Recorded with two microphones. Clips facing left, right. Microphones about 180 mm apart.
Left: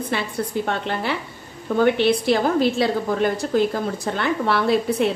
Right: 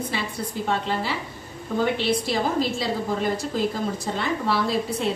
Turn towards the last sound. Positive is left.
turn(degrees=60)  # may be behind; listen again after turning